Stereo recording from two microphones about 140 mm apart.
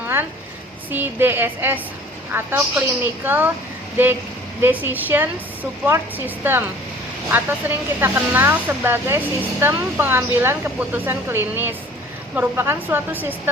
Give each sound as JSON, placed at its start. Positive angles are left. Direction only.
{"t": 0.9, "sound": "speech", "side_deg": -15}